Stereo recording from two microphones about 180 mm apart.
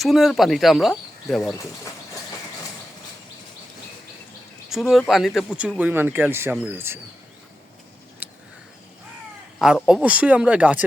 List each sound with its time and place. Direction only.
0.0 s speech: centre (ahead or behind)
4.7 s speech: centre (ahead or behind)
8.2 s a sound: 10° right (ahead or behind)
9.6 s speech: 5° right (ahead or behind)